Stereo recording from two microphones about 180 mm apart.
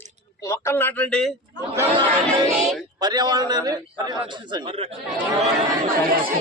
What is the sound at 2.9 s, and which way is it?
A man's voice, 20° right (ahead or behind).